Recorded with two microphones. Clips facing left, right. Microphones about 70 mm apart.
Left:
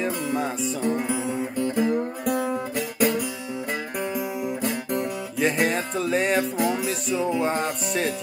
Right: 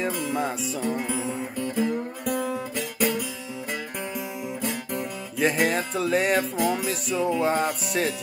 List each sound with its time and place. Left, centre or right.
0.0 s music: centre
4.9 s music: centre